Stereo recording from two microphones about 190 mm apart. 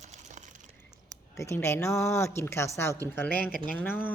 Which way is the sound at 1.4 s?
15° left (ahead or behind).